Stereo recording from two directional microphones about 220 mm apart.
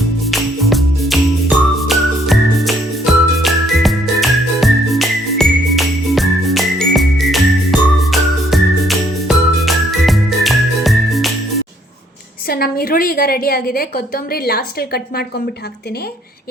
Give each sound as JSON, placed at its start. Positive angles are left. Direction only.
{"t": 0.3, "sound": "music", "side_deg": 0}
{"t": 12.5, "sound": "a woman's voice", "side_deg": 45}